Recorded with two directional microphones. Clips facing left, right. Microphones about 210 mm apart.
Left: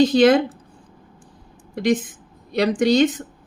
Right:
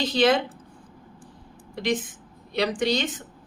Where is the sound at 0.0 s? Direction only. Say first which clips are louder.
Left 7 dB; 50° left (ahead or behind).